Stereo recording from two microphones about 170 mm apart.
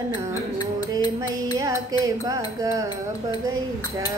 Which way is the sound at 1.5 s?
20° right (ahead or behind).